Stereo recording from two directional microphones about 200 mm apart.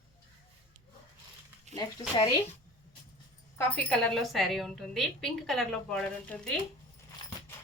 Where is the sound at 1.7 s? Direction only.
35° right (ahead or behind).